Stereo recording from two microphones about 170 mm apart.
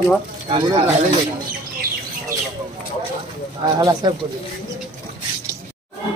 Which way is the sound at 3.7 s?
25° right (ahead or behind).